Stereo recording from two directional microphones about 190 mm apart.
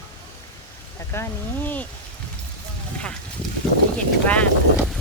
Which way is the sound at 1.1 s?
15° left (ahead or behind).